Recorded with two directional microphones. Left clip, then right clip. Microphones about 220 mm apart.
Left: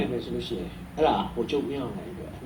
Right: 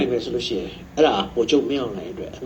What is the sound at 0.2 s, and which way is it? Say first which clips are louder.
A man's voice: right 8 dB; 35° right (ahead or behind).